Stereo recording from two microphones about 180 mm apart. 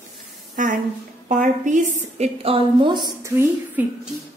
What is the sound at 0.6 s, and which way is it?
A woman's voice, 45° right (ahead or behind).